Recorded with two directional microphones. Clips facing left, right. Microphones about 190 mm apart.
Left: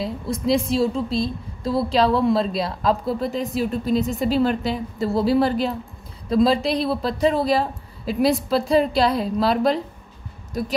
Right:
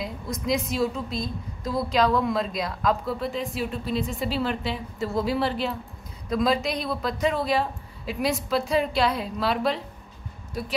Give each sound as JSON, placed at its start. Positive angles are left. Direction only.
{"t": 0.0, "sound": "a woman's voice", "side_deg": 30}